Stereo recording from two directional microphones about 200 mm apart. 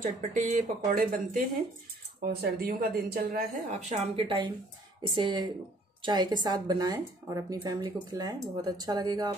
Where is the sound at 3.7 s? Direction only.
35° right (ahead or behind).